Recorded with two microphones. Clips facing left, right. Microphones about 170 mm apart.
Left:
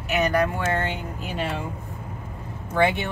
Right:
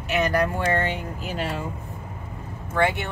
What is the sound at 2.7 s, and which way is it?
Speech, 15° left (ahead or behind).